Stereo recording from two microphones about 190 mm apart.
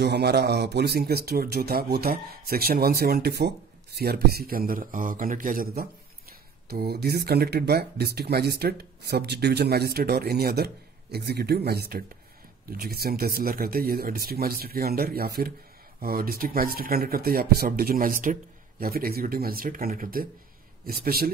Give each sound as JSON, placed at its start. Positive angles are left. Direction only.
{"t": 0.0, "sound": "speech", "side_deg": -60}